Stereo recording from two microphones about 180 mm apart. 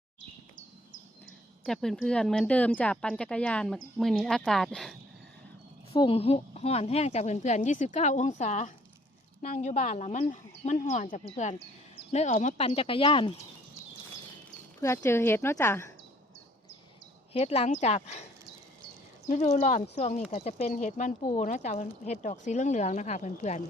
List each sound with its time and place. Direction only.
1.6 s speech: centre (ahead or behind)
5.9 s speech: 30° left (ahead or behind)
14.8 s speech: 15° left (ahead or behind)
17.3 s speech: 35° left (ahead or behind)
19.3 s speech: 40° left (ahead or behind)